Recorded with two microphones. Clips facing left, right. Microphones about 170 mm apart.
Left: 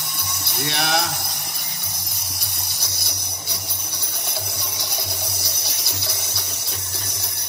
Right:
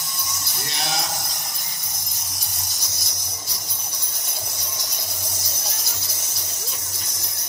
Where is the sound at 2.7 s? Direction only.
65° left (ahead or behind).